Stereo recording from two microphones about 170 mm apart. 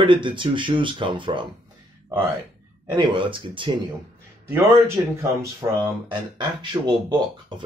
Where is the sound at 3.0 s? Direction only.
30° right (ahead or behind).